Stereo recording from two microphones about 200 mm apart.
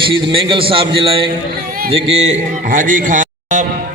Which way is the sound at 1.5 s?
50° right (ahead or behind).